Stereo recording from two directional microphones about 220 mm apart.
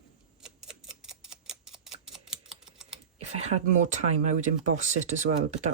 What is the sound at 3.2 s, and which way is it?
Speech, 30° right (ahead or behind).